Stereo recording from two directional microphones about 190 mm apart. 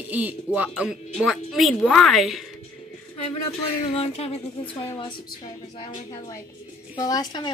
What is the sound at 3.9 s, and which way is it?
Speech, 30° left (ahead or behind).